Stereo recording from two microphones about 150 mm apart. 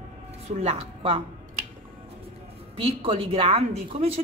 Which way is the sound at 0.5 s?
45° right (ahead or behind).